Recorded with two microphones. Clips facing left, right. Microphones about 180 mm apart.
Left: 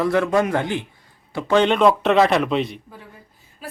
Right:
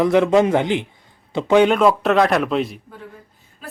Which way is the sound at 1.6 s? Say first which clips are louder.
Left 1 dB; 5° right (ahead or behind).